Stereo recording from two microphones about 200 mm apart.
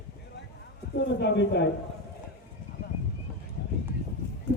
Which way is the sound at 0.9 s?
60° left (ahead or behind).